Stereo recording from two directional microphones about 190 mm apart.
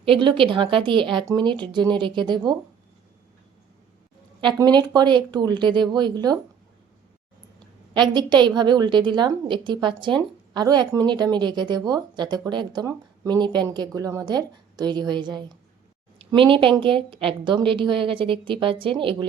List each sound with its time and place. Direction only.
0.0 s a woman's voice: 25° right (ahead or behind)
4.4 s a woman's voice: 25° right (ahead or behind)
7.9 s a woman's voice: 25° right (ahead or behind)